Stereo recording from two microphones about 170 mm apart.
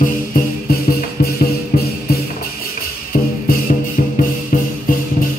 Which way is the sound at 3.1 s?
55° left (ahead or behind).